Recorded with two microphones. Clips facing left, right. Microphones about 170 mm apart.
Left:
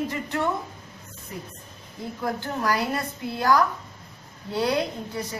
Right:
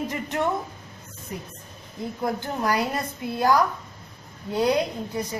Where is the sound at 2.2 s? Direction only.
20° right (ahead or behind).